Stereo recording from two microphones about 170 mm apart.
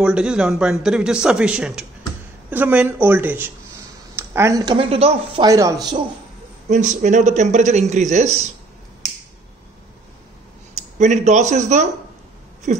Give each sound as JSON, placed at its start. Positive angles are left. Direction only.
{"t": 0.0, "sound": "a man's voice", "side_deg": -5}
{"t": 5.5, "sound": "a man's voice", "side_deg": -20}
{"t": 6.7, "sound": "a man's voice", "side_deg": -45}
{"t": 10.8, "sound": "a man's voice", "side_deg": -45}